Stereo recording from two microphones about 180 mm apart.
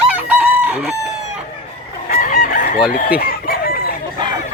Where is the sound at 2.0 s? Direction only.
45° left (ahead or behind).